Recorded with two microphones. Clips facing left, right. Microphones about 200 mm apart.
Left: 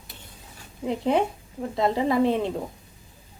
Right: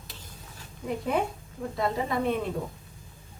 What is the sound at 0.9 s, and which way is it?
Speech, 90° left.